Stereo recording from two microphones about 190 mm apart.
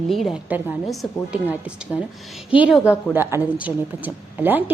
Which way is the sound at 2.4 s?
5° right (ahead or behind).